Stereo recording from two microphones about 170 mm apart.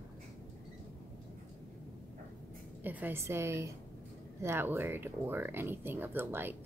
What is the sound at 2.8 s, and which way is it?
Speech, 10° right (ahead or behind).